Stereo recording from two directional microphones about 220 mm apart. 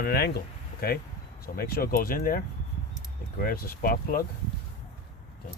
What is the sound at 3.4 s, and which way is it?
Speech, 40° left (ahead or behind).